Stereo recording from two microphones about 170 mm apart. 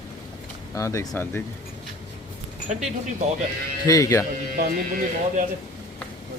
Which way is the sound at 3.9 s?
20° left (ahead or behind).